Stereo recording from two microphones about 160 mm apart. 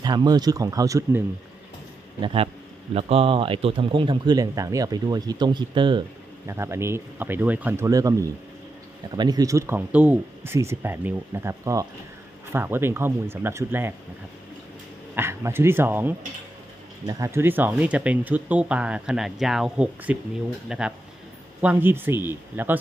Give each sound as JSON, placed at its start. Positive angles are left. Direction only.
{"t": 0.0, "sound": "speech", "side_deg": -25}
{"t": 2.2, "sound": "a man's voice", "side_deg": -35}
{"t": 6.4, "sound": "speech", "side_deg": -15}
{"t": 15.1, "sound": "speech", "side_deg": -15}